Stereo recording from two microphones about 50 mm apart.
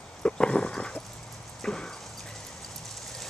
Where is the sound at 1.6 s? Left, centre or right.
Centre.